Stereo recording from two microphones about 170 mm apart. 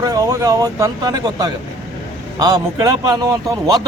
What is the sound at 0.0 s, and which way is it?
Speech, 20° right (ahead or behind).